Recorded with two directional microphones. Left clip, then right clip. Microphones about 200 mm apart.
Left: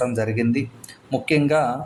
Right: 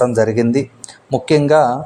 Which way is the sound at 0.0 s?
30° right (ahead or behind).